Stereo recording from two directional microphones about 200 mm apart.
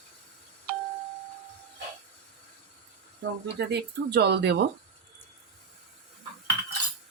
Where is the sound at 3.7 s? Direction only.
55° right (ahead or behind).